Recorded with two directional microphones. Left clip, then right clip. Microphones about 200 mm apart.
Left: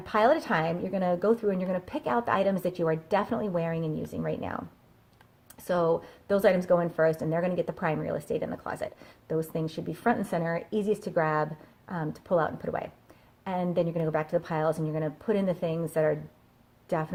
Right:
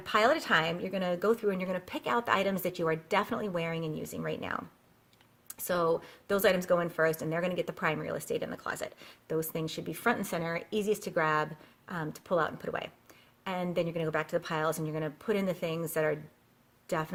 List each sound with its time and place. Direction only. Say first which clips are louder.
0.0 s speech: left 3 dB; 20° right (ahead or behind)
5.5 s a sound: left 3 dB; 20° right (ahead or behind)
5.9 s a woman's voice: left 4 dB; 20° right (ahead or behind)